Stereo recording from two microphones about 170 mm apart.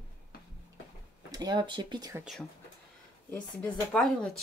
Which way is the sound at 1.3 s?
25° right (ahead or behind).